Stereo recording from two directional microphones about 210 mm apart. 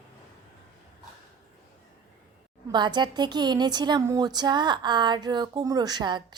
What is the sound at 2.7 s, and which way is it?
A woman's voice, 20° right (ahead or behind).